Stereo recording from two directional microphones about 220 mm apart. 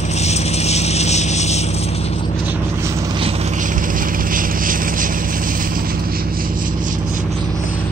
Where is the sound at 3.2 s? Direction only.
35° right (ahead or behind).